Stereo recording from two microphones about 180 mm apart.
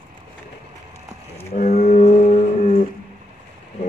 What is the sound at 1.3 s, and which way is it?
Cattle, 35° left (ahead or behind).